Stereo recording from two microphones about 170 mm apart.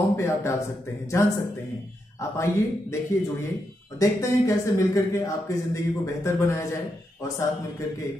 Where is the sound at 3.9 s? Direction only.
20° left (ahead or behind).